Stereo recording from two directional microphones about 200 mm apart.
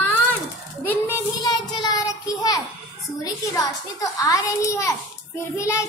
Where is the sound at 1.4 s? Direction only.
20° left (ahead or behind).